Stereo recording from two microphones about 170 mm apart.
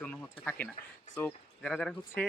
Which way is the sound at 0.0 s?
10° left (ahead or behind).